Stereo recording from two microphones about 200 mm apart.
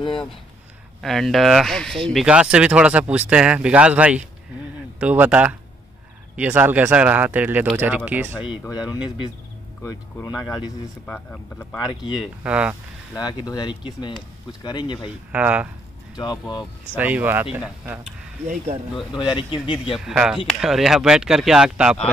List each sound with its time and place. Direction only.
1.0 s speech: centre (ahead or behind)
8.8 s speech: 20° left (ahead or behind)
11.1 s speech: 10° left (ahead or behind)
11.9 s speech: 25° left (ahead or behind)
12.4 s speech: 5° right (ahead or behind)
13.1 s speech: 20° left (ahead or behind)
15.3 s speech: 5° right (ahead or behind)
16.2 s speech: 20° left (ahead or behind)
16.9 s speech: 10° right (ahead or behind)
19.1 s speech: 25° left (ahead or behind)
20.1 s speech: 5° right (ahead or behind)